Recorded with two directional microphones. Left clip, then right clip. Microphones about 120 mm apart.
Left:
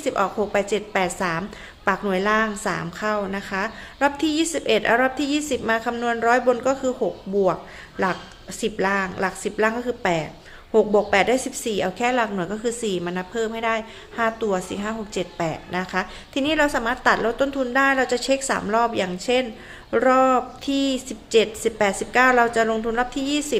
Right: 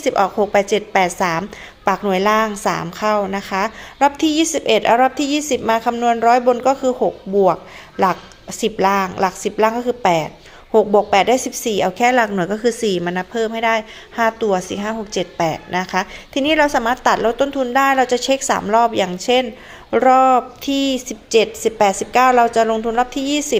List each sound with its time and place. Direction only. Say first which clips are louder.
0.0 s a woman's voice: right 6 dB; 40° right (ahead or behind)
17.3 s a woman's voice: right 5 dB; 25° right (ahead or behind)